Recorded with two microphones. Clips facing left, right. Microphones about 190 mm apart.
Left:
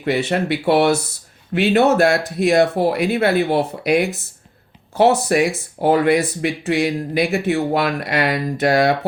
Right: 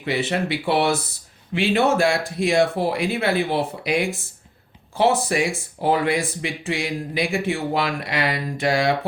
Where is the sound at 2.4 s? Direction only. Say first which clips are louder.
Left 4 dB; 60° left (ahead or behind).